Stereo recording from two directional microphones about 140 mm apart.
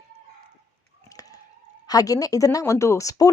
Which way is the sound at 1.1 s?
25° left (ahead or behind).